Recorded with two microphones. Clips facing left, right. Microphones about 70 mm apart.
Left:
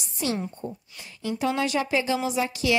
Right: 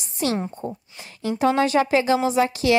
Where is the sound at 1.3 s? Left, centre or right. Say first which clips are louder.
Right 7 dB; right.